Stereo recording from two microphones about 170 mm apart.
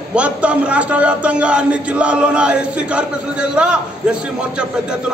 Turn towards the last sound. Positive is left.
turn(degrees=-5)  # may be behind; listen again after turning